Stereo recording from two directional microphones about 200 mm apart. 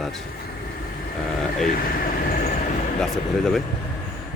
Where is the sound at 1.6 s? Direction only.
45° left (ahead or behind).